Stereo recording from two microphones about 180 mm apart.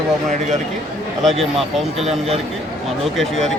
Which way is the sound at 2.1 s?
35° right (ahead or behind).